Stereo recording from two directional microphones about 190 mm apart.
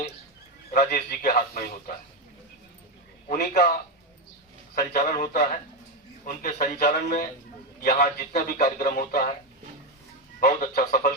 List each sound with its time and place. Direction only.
0.7 s a man's voice: 55° left (ahead or behind)
3.2 s a man's voice: 45° left (ahead or behind)
4.7 s a man's voice: 45° left (ahead or behind)
10.4 s a man's voice: 45° left (ahead or behind)